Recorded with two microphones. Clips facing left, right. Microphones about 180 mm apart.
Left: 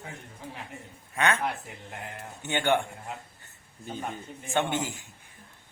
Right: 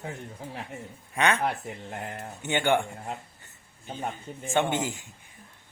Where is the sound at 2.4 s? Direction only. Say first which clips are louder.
Right 1 dB; 15° right (ahead or behind).